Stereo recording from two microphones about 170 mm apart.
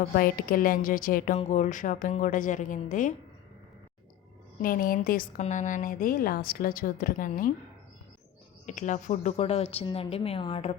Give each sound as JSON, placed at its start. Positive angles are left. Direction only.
{"t": 0.2, "sound": "a woman's voice", "side_deg": 60}
{"t": 1.4, "sound": "a woman's voice", "side_deg": 40}
{"t": 4.6, "sound": "a woman's voice", "side_deg": 55}
{"t": 8.6, "sound": "a woman's voice", "side_deg": 45}